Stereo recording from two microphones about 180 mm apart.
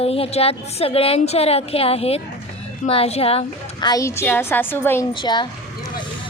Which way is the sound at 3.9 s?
15° left (ahead or behind).